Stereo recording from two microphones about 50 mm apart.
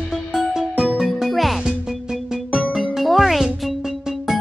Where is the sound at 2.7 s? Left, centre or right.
Centre.